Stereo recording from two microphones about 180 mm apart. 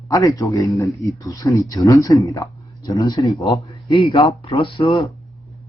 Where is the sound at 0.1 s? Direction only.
20° left (ahead or behind).